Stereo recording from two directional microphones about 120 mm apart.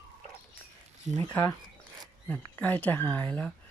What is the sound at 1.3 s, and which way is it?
Speech, 20° left (ahead or behind).